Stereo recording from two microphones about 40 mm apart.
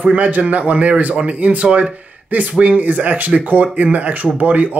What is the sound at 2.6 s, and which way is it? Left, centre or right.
Speech, right.